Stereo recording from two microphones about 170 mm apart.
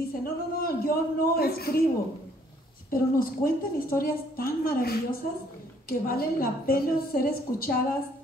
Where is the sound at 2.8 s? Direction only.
60° left (ahead or behind).